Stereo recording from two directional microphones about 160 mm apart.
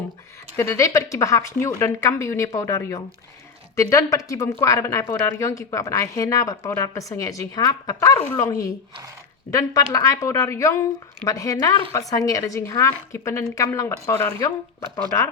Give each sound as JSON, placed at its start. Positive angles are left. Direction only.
{"t": 0.5, "sound": "speech", "side_deg": 20}